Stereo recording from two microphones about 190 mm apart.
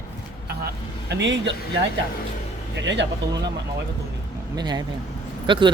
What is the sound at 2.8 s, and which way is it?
Speech, 70° right (ahead or behind).